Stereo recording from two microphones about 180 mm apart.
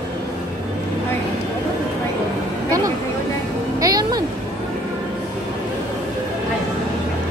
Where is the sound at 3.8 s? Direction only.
20° right (ahead or behind).